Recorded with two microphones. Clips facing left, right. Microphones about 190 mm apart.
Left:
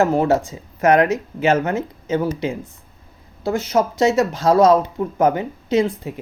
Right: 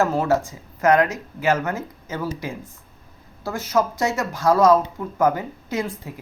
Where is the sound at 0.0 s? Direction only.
20° left (ahead or behind).